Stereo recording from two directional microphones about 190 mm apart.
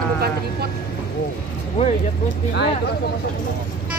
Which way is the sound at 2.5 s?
60° left (ahead or behind).